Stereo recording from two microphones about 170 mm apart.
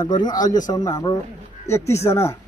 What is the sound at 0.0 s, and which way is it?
A man's voice, 25° left (ahead or behind).